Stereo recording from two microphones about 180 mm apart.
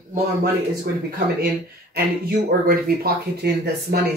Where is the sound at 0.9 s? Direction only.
60° right (ahead or behind).